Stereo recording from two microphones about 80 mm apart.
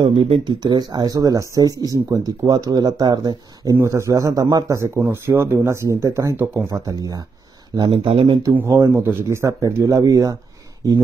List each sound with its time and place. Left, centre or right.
0.0 s speech: right
3.8 s a man's voice: right
4.9 s speech: right
7.7 s a man's voice: right
8.9 s speech: right
9.5 s a man's voice: right